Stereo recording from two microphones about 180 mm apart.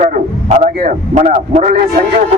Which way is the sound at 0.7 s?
60° right (ahead or behind).